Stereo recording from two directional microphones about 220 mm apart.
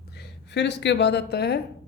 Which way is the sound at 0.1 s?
50° left (ahead or behind).